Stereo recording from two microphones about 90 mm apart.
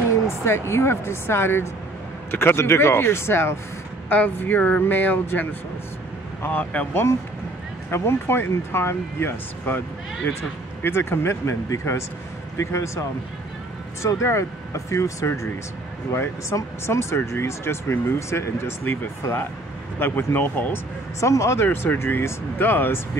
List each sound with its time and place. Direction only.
0.1 s speech: 30° left (ahead or behind)
7.9 s speech: 30° left (ahead or behind)
14.0 s speech: 30° left (ahead or behind)
21.2 s speech: 35° left (ahead or behind)